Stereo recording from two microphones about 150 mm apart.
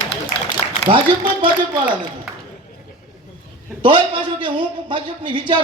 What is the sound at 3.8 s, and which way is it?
Speech, 35° right (ahead or behind).